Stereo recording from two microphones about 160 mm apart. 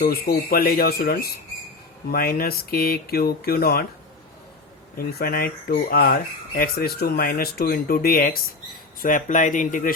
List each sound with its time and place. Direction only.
0.0 s speech: 75° left (ahead or behind)
4.9 s speech: 70° left (ahead or behind)
9.0 s speech: 55° left (ahead or behind)